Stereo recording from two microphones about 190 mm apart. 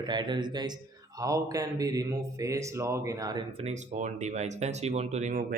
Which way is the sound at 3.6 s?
35° right (ahead or behind).